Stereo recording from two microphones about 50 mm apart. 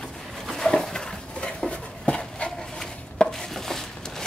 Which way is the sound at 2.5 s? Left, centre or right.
Centre.